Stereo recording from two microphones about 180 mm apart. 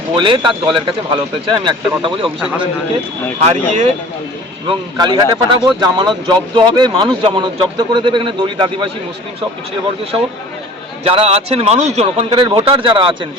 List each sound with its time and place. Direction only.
0.1 s a man's voice: 25° right (ahead or behind)
3.4 s speech: 35° right (ahead or behind)
4.7 s a man's voice: 25° right (ahead or behind)
11.0 s speech: 35° right (ahead or behind)